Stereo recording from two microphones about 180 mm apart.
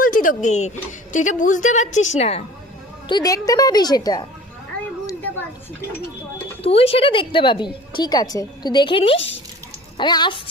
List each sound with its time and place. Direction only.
0.0 s a woman's voice: 50° left (ahead or behind)
3.1 s a woman's voice: 20° left (ahead or behind)
5.0 s a sound: 10° left (ahead or behind)
6.6 s a woman's voice: 35° left (ahead or behind)